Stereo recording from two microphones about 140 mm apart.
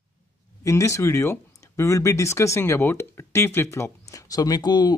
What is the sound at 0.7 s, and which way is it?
Speech, 20° left (ahead or behind).